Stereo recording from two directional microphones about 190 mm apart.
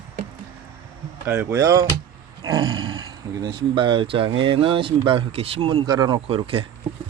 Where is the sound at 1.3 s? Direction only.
10° right (ahead or behind); by 6.7 s 30° right (ahead or behind).